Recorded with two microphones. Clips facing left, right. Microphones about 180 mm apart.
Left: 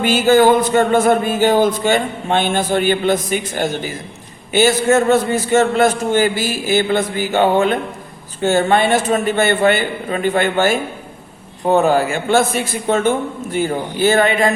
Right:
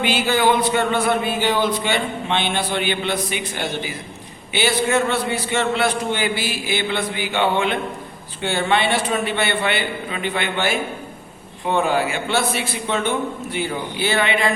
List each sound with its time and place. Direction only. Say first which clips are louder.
0.0 s speech: left 7 dB; 45° left (ahead or behind)